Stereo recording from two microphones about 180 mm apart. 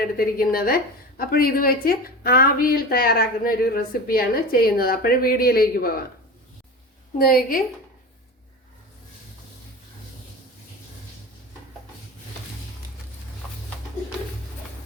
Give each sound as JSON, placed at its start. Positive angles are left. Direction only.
{"t": 0.2, "sound": "a woman's voice", "side_deg": 55}
{"t": 7.2, "sound": "a woman's voice", "side_deg": 55}